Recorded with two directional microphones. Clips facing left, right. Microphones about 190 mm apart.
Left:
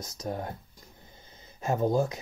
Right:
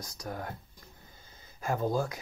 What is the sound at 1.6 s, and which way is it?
Speech, 20° left (ahead or behind).